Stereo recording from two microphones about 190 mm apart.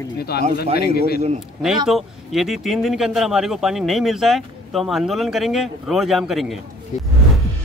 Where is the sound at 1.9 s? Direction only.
Centre (ahead or behind).